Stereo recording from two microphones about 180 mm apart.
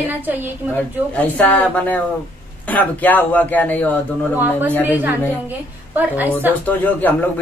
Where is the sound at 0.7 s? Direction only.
10° left (ahead or behind).